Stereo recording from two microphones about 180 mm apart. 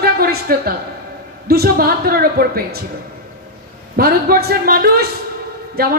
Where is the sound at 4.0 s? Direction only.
60° right (ahead or behind).